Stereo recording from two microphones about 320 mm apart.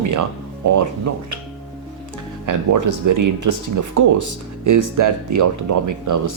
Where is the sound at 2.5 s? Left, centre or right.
Right.